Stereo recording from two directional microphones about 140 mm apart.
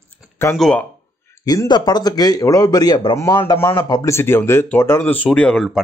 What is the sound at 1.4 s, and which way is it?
A man's voice, 30° left (ahead or behind).